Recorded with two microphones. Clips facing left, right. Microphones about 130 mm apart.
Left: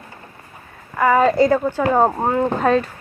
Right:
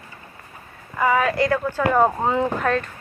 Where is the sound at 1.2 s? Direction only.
25° left (ahead or behind).